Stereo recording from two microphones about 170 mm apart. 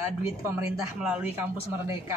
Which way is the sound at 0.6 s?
10° right (ahead or behind).